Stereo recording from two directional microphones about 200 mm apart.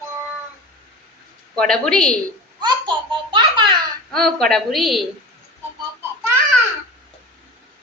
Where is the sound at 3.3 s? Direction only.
25° right (ahead or behind).